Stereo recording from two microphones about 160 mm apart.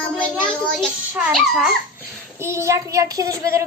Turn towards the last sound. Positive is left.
turn(degrees=-15)  # may be behind; listen again after turning